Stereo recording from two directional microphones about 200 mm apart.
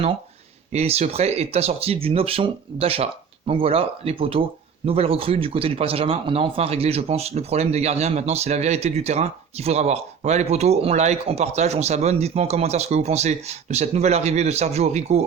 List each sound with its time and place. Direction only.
0.7 s speech: 30° right (ahead or behind)